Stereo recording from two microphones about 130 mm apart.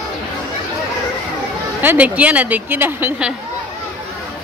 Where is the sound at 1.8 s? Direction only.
15° right (ahead or behind).